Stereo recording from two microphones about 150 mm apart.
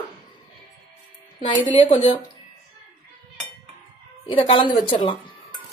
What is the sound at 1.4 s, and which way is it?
Speech, 35° left (ahead or behind).